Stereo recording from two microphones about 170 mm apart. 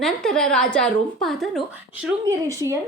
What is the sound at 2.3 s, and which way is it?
Speech, 20° right (ahead or behind).